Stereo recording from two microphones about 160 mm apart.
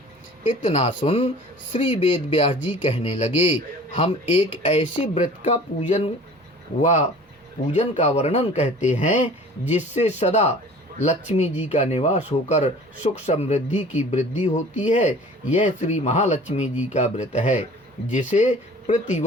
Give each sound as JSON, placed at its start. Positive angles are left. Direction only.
{"t": 0.6, "sound": "speech", "side_deg": 45}
{"t": 2.9, "sound": "speech", "side_deg": 45}